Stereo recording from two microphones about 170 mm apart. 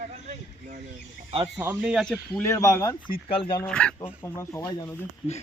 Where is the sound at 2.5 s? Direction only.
15° left (ahead or behind).